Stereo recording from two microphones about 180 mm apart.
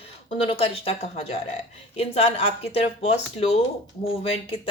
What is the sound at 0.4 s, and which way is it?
Speech, 30° left (ahead or behind).